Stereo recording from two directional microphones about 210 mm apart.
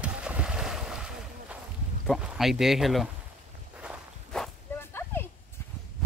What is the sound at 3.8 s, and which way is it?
Walk, centre (ahead or behind).